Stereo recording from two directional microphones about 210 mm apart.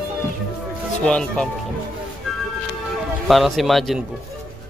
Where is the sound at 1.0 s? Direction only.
5° left (ahead or behind).